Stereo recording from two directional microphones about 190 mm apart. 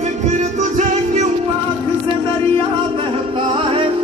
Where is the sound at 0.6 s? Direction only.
40° right (ahead or behind).